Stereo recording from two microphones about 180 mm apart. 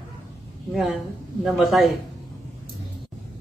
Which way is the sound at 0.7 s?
Centre (ahead or behind).